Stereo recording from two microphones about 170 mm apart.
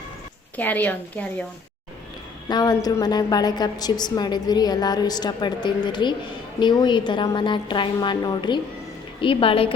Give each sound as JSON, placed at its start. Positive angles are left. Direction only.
{"t": 0.5, "sound": "a woman's voice", "side_deg": 10}
{"t": 2.5, "sound": "a woman's voice", "side_deg": 25}